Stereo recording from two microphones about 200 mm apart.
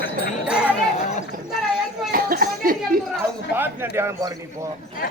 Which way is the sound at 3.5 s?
10° right (ahead or behind).